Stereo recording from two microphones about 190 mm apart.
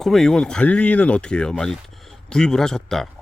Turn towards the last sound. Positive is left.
turn(degrees=5)  # may be behind; listen again after turning